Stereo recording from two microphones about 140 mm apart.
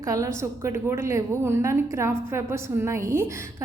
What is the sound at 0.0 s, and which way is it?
A woman's voice, 25° right (ahead or behind).